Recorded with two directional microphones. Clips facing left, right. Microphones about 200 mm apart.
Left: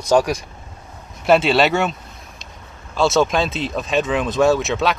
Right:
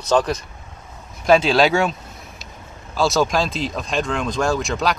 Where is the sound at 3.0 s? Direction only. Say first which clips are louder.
Left 2 dB; centre (ahead or behind).